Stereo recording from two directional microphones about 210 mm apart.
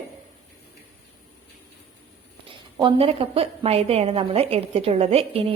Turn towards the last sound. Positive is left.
turn(degrees=-30)  # may be behind; listen again after turning